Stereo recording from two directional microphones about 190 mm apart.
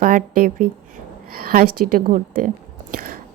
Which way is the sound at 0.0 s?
45° right (ahead or behind).